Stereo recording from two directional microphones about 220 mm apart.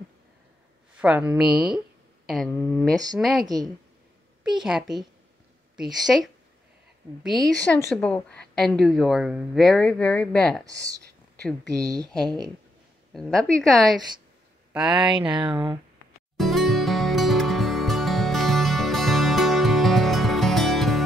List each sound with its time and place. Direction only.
0.9 s a woman's voice: 5° right (ahead or behind)
10.6 s speech: 15° right (ahead or behind)
13.1 s a woman's voice: centre (ahead or behind)
15.1 s speech: 20° right (ahead or behind)
16.3 s music: centre (ahead or behind)